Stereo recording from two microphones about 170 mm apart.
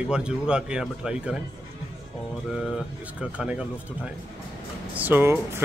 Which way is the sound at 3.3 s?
5° right (ahead or behind).